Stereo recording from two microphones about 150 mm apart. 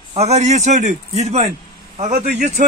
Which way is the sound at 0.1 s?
45° right (ahead or behind).